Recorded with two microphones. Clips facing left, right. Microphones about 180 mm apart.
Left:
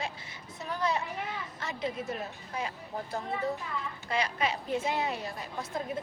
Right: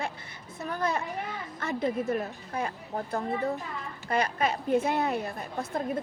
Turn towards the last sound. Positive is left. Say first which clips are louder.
# right 4 dB
turn(degrees=-55)  # may be behind; listen again after turning